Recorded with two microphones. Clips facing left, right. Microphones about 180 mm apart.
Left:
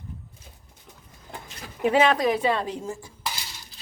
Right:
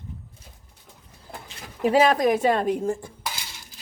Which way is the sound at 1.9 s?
40° right (ahead or behind).